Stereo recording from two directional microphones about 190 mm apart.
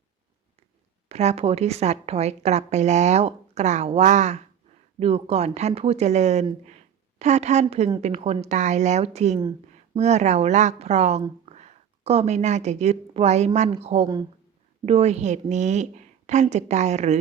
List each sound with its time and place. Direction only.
1.0 s a woman's voice: 35° right (ahead or behind)